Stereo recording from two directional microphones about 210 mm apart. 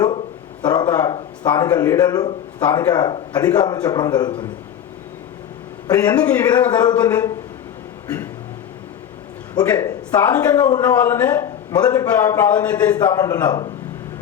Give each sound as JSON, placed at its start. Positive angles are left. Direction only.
{"t": 0.6, "sound": "speech", "side_deg": 20}
{"t": 5.9, "sound": "speech", "side_deg": 20}
{"t": 8.0, "sound": "a sound", "side_deg": 15}
{"t": 9.6, "sound": "speech", "side_deg": 20}